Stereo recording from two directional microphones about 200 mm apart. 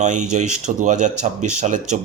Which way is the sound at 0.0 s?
35° right (ahead or behind).